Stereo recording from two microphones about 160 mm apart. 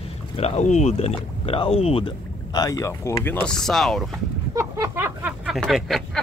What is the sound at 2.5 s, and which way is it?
Speech, 20° left (ahead or behind).